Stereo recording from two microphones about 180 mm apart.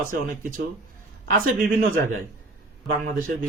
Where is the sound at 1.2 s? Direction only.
55° right (ahead or behind).